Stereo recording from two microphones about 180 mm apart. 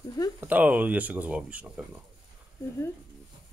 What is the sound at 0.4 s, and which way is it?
Speech, 10° right (ahead or behind).